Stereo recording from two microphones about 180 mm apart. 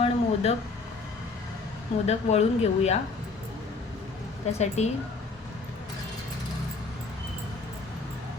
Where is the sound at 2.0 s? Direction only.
35° left (ahead or behind).